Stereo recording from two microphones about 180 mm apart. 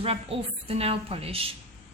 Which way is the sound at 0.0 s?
35° right (ahead or behind).